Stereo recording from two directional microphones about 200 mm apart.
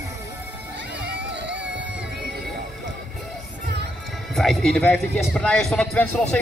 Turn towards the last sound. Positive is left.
turn(degrees=10)  # may be behind; listen again after turning